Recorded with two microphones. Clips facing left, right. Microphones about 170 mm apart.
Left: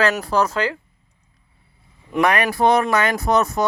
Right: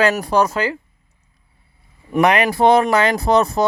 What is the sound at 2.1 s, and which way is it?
Speech, 20° right (ahead or behind).